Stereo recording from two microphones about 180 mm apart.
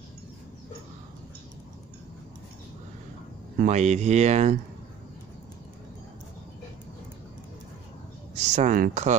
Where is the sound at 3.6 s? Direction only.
40° right (ahead or behind).